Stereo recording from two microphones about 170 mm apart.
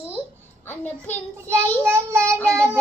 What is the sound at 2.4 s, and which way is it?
Speech, 5° left (ahead or behind).